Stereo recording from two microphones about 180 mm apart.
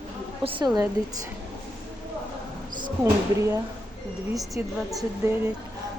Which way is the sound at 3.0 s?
15° right (ahead or behind).